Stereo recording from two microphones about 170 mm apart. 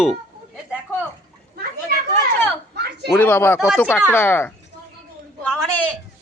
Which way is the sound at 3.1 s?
10° left (ahead or behind).